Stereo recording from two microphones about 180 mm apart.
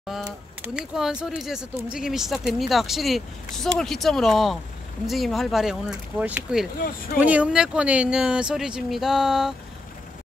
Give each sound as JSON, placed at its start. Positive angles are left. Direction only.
{"t": 0.2, "sound": "speech", "side_deg": -10}
{"t": 6.8, "sound": "speech", "side_deg": 50}
{"t": 7.2, "sound": "speech", "side_deg": -10}